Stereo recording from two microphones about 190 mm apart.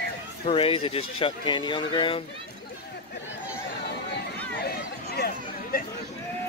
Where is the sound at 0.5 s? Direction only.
30° left (ahead or behind).